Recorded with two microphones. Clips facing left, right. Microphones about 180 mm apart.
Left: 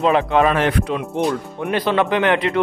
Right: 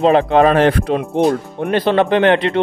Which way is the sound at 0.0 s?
35° right (ahead or behind).